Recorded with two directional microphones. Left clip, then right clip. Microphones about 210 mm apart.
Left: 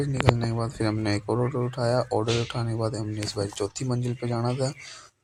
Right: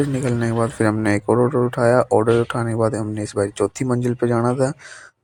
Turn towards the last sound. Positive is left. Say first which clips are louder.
# right 10 dB
turn(degrees=-40)  # may be behind; listen again after turning